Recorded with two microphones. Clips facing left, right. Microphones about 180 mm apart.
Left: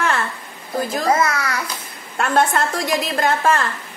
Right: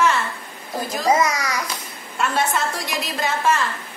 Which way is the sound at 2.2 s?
50° left (ahead or behind).